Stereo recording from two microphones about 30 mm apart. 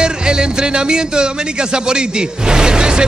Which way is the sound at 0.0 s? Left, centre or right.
Right.